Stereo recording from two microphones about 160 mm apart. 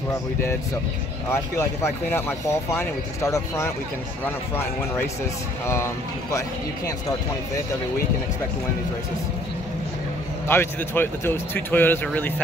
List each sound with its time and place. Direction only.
1.3 s speech: 15° left (ahead or behind)
10.5 s speech: 15° left (ahead or behind)